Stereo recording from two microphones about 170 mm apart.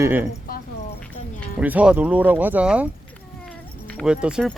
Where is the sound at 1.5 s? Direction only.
10° right (ahead or behind).